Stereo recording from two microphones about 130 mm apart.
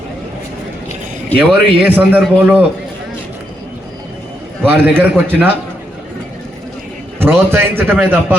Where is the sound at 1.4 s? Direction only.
15° right (ahead or behind).